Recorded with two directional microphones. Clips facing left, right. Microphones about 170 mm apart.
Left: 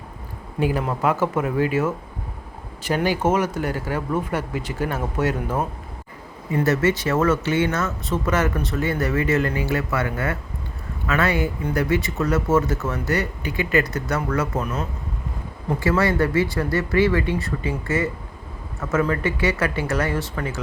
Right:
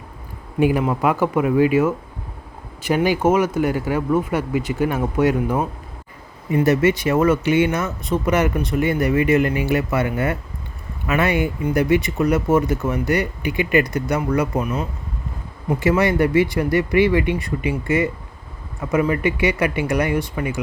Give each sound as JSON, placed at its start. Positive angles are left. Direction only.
{"t": 0.6, "sound": "speech", "side_deg": -10}